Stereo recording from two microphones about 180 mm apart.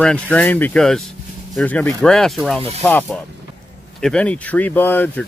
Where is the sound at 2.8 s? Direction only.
10° left (ahead or behind).